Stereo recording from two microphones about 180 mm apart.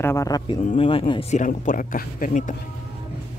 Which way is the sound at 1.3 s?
45° left (ahead or behind).